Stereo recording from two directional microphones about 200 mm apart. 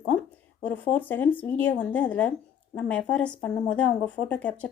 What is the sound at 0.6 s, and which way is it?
Speech, 10° left (ahead or behind).